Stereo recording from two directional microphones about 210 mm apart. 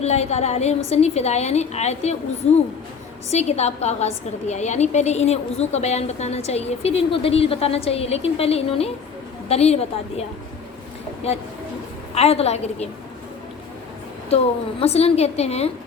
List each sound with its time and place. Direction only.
0.0 s a woman's voice: 30° left (ahead or behind)
3.3 s a woman's voice: 30° left (ahead or behind)
12.1 s a woman's voice: 30° left (ahead or behind)
14.3 s a woman's voice: 30° left (ahead or behind)